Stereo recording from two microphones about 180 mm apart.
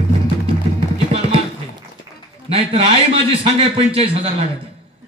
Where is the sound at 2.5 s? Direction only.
35° right (ahead or behind).